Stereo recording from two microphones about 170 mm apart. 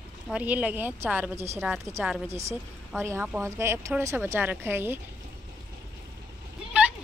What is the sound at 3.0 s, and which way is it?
Speech, 15° right (ahead or behind).